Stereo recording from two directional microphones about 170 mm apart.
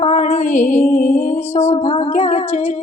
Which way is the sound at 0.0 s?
45° left (ahead or behind).